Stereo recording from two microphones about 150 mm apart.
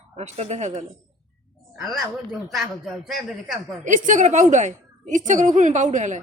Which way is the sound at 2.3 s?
Centre (ahead or behind).